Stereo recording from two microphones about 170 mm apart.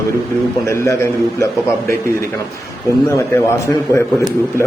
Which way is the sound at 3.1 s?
20° left (ahead or behind).